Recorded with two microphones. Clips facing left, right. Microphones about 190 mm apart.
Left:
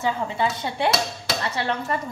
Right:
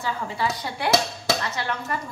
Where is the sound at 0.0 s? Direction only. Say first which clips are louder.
Left 3 dB; 25° left (ahead or behind).